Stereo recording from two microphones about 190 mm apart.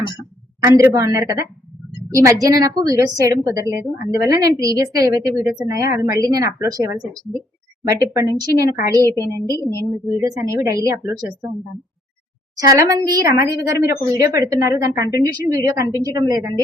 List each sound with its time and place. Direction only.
0.6 s a woman's voice: 15° right (ahead or behind)
9.5 s speech: 15° left (ahead or behind)
9.7 s a woman's voice: 15° right (ahead or behind)
12.5 s a woman's voice: 20° right (ahead or behind)